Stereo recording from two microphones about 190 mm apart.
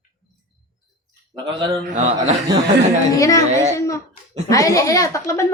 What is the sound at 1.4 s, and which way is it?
Speech, 25° right (ahead or behind).